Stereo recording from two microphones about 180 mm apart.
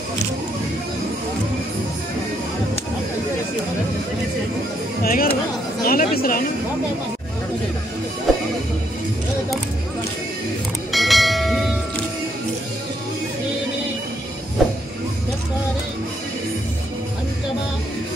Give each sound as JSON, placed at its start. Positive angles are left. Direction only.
{"t": 5.0, "sound": "speech", "side_deg": 55}
{"t": 8.3, "sound": "music", "side_deg": 0}
{"t": 10.9, "sound": "bell", "side_deg": 0}